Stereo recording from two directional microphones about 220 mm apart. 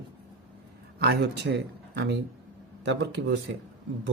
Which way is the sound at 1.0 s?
45° right (ahead or behind).